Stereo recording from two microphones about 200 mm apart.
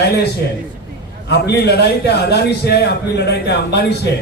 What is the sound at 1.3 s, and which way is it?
A man's voice, 55° left (ahead or behind).